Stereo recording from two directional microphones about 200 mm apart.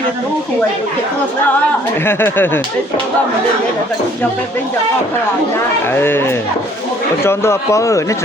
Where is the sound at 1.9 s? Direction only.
10° left (ahead or behind).